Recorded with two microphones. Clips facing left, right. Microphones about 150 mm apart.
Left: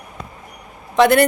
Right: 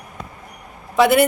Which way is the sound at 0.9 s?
5° right (ahead or behind).